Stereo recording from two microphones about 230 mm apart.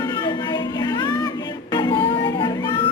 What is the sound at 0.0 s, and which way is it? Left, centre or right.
Music, centre.